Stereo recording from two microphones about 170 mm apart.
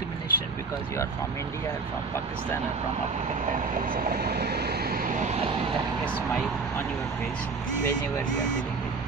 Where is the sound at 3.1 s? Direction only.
50° right (ahead or behind).